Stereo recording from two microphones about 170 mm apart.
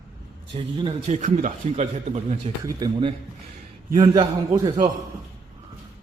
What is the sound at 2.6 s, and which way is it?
A man's voice, 25° right (ahead or behind).